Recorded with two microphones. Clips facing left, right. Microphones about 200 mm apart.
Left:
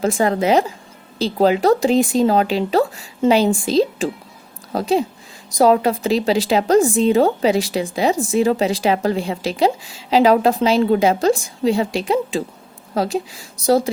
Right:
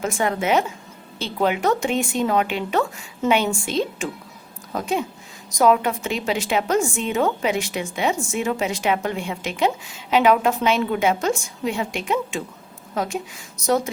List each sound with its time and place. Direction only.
0.0 s a woman's voice: 35° left (ahead or behind)